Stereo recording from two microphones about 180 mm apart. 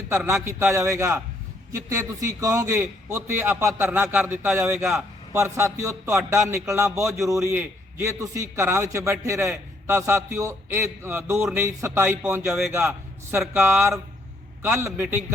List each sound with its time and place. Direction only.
0.1 s a man's voice: 15° right (ahead or behind)